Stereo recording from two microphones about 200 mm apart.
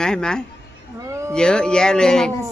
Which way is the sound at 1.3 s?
5° left (ahead or behind).